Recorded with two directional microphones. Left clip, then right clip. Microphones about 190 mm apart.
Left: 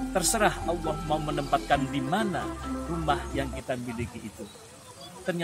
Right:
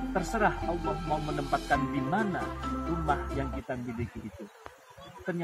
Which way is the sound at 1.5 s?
20° left (ahead or behind).